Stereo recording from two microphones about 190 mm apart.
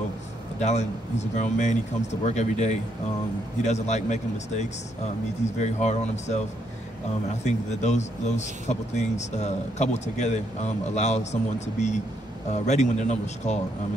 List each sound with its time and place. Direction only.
0.6 s speech: 35° left (ahead or behind)
7.4 s speech: 35° left (ahead or behind)